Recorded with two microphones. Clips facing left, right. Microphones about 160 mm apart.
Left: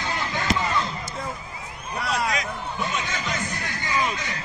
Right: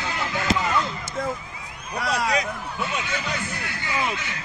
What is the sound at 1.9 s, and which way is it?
Speech, 75° right (ahead or behind).